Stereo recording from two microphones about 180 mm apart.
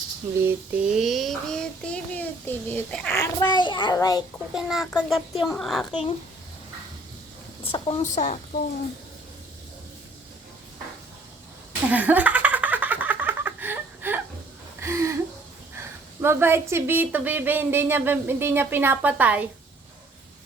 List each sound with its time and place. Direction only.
0.4 s child singing: 5° right (ahead or behind)
3.2 s a child's voice: 25° left (ahead or behind)
4.5 s child singing: centre (ahead or behind)
5.9 s a child's voice: 30° left (ahead or behind)
7.6 s speech: 30° left (ahead or behind)
11.9 s giggle: 10° right (ahead or behind)
14.8 s a sound: 15° right (ahead or behind)
16.2 s speech: 15° right (ahead or behind)